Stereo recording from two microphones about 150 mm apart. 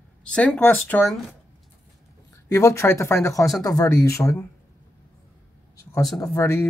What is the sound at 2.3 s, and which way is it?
Speech, 20° left (ahead or behind).